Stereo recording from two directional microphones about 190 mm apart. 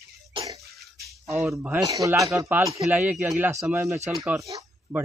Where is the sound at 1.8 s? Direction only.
15° right (ahead or behind).